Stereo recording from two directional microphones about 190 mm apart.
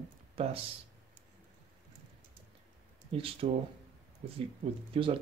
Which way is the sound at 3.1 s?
30° right (ahead or behind).